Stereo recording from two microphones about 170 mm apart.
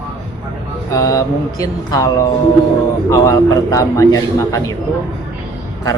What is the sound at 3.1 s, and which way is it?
A man's voice, 20° left (ahead or behind).